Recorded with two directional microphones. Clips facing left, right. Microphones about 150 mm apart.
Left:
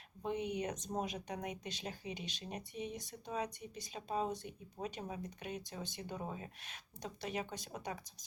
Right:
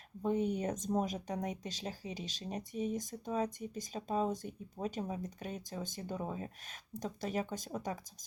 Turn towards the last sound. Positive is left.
turn(degrees=-45)  # may be behind; listen again after turning